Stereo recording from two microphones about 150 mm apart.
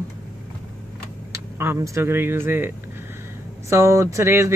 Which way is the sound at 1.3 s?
20° right (ahead or behind).